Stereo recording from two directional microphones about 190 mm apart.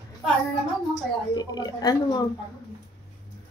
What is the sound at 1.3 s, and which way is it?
Speech, 20° left (ahead or behind).